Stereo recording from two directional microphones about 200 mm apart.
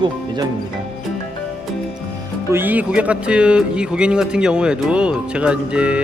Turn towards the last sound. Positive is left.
turn(degrees=-5)  # may be behind; listen again after turning